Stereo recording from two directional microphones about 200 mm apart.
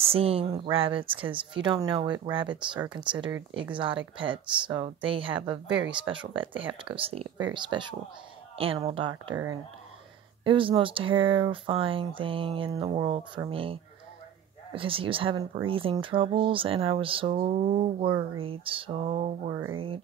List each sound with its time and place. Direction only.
0.0 s speech: 30° right (ahead or behind)
10.4 s speech: 25° right (ahead or behind)